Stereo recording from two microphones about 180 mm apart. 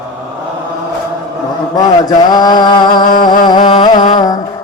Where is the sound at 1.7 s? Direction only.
20° left (ahead or behind).